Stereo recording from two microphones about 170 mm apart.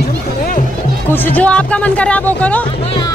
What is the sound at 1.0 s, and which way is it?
A woman's voice, 10° left (ahead or behind).